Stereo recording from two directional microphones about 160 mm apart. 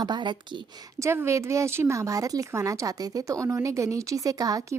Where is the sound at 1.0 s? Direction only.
15° right (ahead or behind).